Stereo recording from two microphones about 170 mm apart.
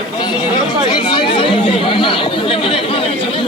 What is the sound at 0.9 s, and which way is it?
Speech, 25° left (ahead or behind).